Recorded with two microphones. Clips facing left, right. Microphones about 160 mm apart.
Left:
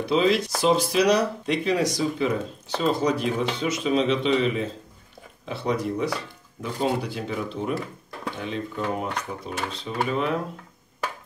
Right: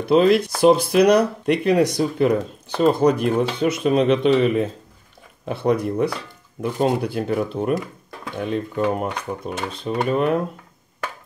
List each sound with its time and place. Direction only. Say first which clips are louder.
0.1 s speech: right 6 dB; 55° right (ahead or behind)